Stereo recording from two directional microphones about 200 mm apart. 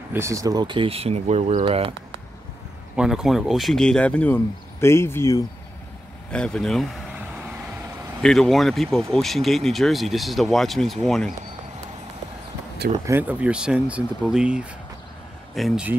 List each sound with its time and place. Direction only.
0.1 s speech: 15° right (ahead or behind)
3.0 s speech: centre (ahead or behind)
8.2 s speech: centre (ahead or behind)
13.0 s speech: 10° right (ahead or behind)